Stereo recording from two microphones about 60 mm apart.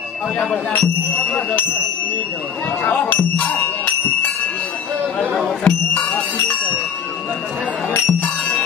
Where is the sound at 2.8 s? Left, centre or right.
Left.